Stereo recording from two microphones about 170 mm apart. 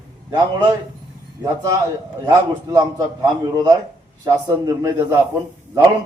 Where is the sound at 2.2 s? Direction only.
25° right (ahead or behind).